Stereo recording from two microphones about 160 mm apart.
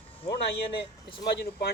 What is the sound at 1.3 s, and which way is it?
Speech, 90° left.